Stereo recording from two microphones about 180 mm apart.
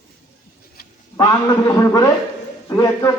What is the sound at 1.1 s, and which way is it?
A man's voice, 20° left (ahead or behind).